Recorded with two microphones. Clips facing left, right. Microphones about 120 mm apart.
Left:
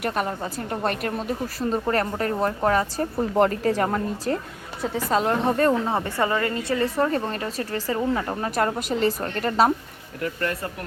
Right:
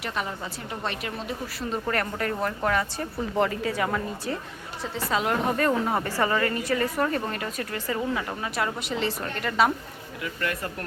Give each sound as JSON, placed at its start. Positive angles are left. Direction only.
{"t": 0.0, "sound": "a woman's voice", "side_deg": 50}
{"t": 4.3, "sound": "a woman's voice", "side_deg": 50}
{"t": 5.1, "sound": "a woman's voice", "side_deg": 35}